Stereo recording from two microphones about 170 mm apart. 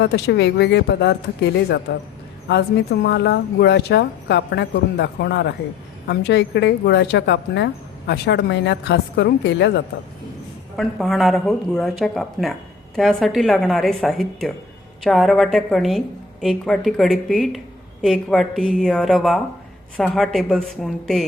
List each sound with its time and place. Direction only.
0.0 s speech: 80° left
6.1 s speech: 90° left
10.8 s a woman's voice: centre (ahead or behind)